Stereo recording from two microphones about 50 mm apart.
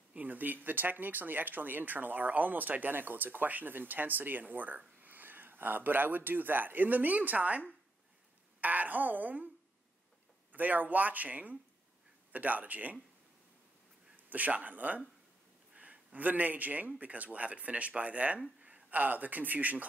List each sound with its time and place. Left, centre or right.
0.1 s speech: right
10.5 s speech: right
14.1 s a man's voice: right